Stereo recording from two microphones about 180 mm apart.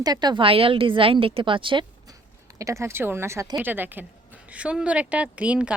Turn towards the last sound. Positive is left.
turn(degrees=-5)  # may be behind; listen again after turning